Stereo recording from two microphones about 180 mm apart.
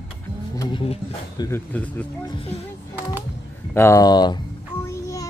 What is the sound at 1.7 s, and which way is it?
Speech, 10° left (ahead or behind).